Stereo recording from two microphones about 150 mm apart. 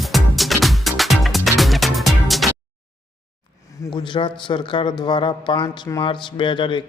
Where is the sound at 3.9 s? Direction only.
30° left (ahead or behind).